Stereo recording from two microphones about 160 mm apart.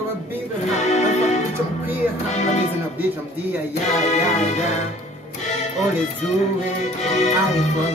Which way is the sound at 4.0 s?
45° left (ahead or behind).